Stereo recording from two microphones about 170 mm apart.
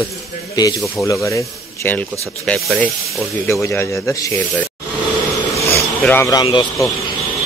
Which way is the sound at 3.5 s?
15° left (ahead or behind).